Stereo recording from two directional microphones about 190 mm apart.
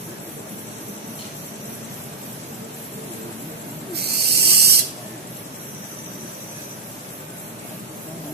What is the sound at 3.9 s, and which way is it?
Owl, 55° right (ahead or behind).